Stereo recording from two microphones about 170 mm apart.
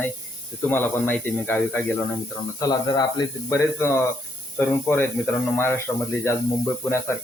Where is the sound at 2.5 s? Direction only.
25° left (ahead or behind).